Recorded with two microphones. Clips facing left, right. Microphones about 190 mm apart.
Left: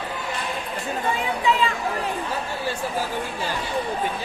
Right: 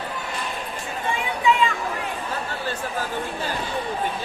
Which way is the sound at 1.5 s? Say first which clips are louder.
Right 2 dB; 35° left (ahead or behind).